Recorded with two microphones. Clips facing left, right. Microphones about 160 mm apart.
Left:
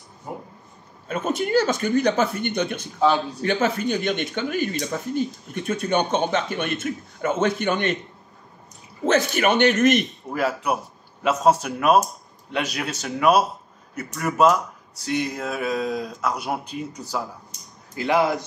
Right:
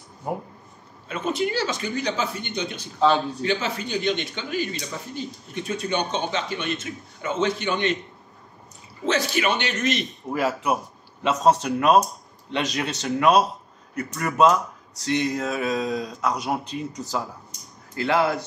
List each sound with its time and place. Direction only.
1.0 s speech: 45° left (ahead or behind)
9.0 s speech: 50° left (ahead or behind)
10.3 s speech: centre (ahead or behind)
17.9 s speech: 15° left (ahead or behind)